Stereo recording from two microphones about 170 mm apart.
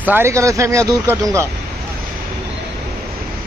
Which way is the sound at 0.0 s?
15° right (ahead or behind).